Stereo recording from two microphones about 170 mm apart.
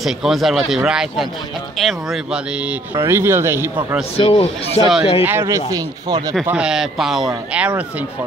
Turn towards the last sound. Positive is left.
turn(degrees=-5)  # may be behind; listen again after turning